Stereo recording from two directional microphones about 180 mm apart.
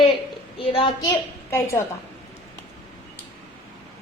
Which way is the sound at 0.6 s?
30° left (ahead or behind).